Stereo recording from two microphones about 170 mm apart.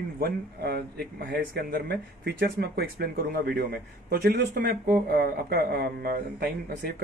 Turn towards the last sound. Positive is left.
turn(degrees=-60)  # may be behind; listen again after turning